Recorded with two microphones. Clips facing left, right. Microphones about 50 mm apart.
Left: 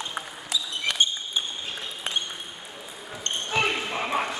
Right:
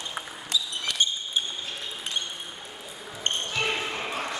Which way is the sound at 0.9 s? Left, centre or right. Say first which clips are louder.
Left 3 dB; left.